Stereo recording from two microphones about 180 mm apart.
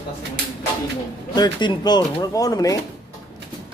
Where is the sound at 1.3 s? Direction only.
25° left (ahead or behind).